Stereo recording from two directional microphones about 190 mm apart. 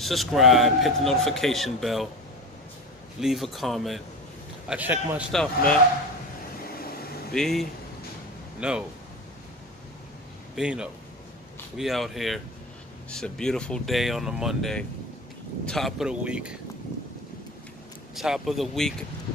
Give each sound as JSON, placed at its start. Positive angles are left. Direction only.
{"t": 0.0, "sound": "a man's voice", "side_deg": 0}
{"t": 3.2, "sound": "a man's voice", "side_deg": 0}
{"t": 5.3, "sound": "a man's voice", "side_deg": 5}
{"t": 6.6, "sound": "a sound", "side_deg": 50}
{"t": 7.3, "sound": "a man's voice", "side_deg": 0}
{"t": 10.5, "sound": "a man's voice", "side_deg": -5}
{"t": 18.1, "sound": "a man's voice", "side_deg": 0}